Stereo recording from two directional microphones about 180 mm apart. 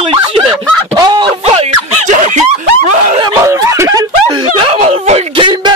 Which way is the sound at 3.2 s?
20° right (ahead or behind).